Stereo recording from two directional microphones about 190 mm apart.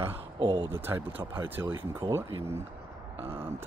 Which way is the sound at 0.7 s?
10° right (ahead or behind).